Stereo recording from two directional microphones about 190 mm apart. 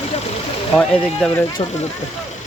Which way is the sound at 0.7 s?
5° left (ahead or behind).